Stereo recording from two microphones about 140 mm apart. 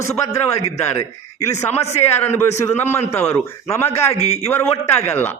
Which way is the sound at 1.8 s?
50° left (ahead or behind).